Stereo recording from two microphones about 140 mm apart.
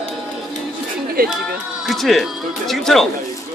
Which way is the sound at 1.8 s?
Centre (ahead or behind).